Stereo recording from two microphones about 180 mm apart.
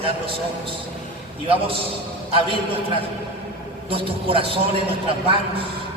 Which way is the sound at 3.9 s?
30° right (ahead or behind).